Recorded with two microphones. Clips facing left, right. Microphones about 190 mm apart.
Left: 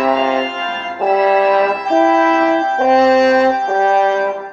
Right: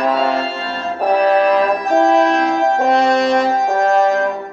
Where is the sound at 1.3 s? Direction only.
5° left (ahead or behind).